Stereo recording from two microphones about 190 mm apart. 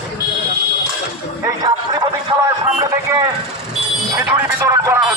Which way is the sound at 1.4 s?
20° right (ahead or behind).